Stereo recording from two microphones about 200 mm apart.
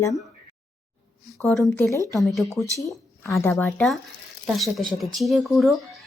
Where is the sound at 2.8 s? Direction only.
15° left (ahead or behind).